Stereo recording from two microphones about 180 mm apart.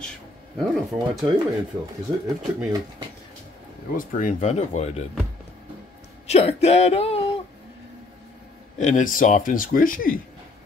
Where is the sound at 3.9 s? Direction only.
45° left (ahead or behind).